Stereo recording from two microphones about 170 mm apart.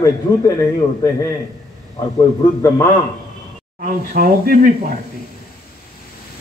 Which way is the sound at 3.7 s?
55° right (ahead or behind).